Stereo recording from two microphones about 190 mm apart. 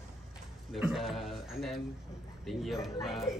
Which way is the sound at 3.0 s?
Centre (ahead or behind).